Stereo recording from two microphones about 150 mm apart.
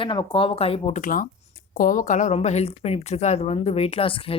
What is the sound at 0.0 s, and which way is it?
A woman's voice, 35° left (ahead or behind).